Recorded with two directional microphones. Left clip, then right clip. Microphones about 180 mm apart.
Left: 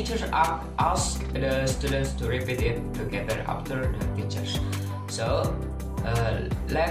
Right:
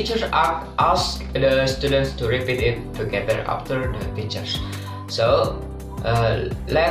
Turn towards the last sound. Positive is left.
turn(degrees=0)  # may be behind; listen again after turning